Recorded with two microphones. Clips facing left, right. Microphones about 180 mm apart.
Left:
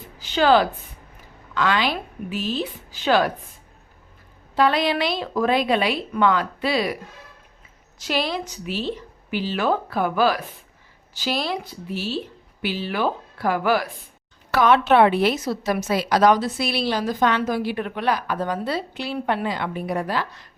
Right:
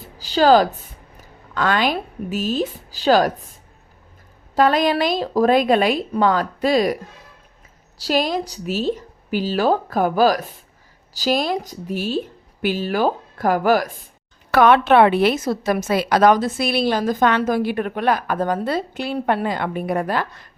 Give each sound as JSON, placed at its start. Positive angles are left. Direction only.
{"t": 0.0, "sound": "a woman's voice", "side_deg": -35}
{"t": 4.5, "sound": "a woman's voice", "side_deg": -45}
{"t": 7.9, "sound": "a woman's voice", "side_deg": -40}
{"t": 14.5, "sound": "a woman's voice", "side_deg": -60}